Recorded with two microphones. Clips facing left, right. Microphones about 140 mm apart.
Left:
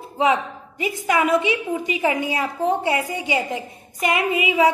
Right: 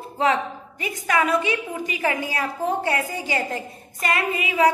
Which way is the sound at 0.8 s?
25° left (ahead or behind).